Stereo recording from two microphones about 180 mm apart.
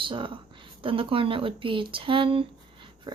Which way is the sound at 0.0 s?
30° right (ahead or behind).